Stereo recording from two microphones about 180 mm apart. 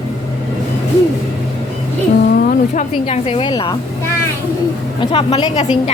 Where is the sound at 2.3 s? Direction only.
50° left (ahead or behind).